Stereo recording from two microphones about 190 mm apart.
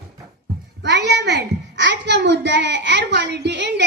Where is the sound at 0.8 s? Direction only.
65° right (ahead or behind).